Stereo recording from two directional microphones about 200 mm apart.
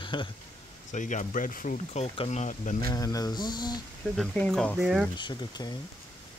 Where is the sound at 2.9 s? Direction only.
20° left (ahead or behind).